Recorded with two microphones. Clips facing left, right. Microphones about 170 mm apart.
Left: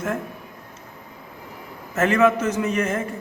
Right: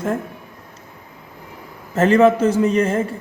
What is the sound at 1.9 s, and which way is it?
A man's voice, 30° right (ahead or behind).